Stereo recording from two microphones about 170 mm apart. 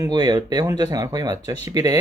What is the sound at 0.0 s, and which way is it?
Speech, 25° right (ahead or behind).